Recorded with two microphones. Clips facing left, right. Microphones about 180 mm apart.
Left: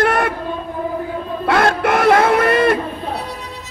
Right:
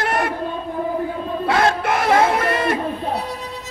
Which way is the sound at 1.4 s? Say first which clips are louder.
Left 3 dB; 60° left (ahead or behind).